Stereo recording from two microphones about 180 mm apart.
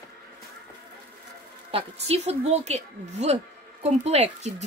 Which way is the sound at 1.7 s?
35° right (ahead or behind).